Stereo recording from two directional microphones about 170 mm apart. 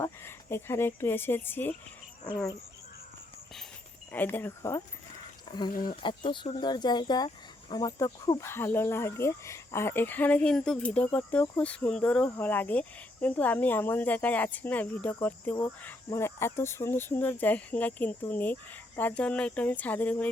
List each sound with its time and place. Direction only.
0.0 s speech: 15° left (ahead or behind)
4.1 s speech: 10° left (ahead or behind)
5.5 s speech: 25° left (ahead or behind)
5.7 s speech: 55° left (ahead or behind)
6.0 s speech: 30° left (ahead or behind); by 20.3 s 10° left (ahead or behind)